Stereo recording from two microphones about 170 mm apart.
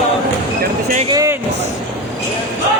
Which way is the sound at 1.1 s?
20° right (ahead or behind).